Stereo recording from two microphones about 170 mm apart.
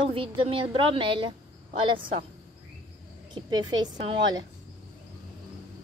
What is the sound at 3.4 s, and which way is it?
Speech, 25° right (ahead or behind).